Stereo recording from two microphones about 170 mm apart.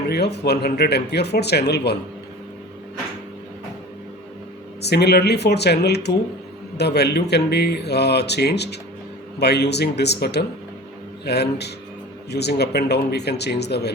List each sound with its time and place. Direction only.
0.1 s speech: 70° left (ahead or behind)
4.8 s speech: 75° left (ahead or behind)